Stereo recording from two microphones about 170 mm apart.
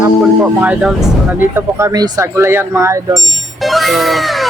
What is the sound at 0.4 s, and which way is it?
Speech, 5° right (ahead or behind).